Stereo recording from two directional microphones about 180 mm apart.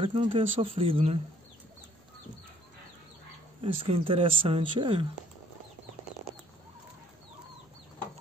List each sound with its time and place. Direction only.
0.0 s speech: 30° right (ahead or behind)
3.6 s speech: 30° right (ahead or behind)